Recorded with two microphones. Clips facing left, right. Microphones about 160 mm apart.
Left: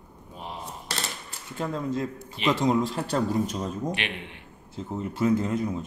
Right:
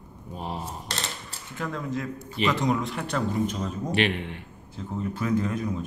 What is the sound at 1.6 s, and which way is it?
A man's voice, 25° left (ahead or behind).